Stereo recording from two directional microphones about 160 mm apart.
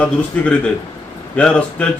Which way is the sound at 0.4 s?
10° left (ahead or behind).